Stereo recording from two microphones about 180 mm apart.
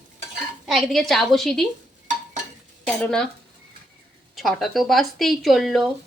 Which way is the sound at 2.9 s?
5° left (ahead or behind).